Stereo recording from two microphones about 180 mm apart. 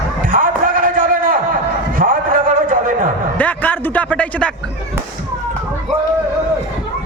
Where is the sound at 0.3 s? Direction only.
50° right (ahead or behind).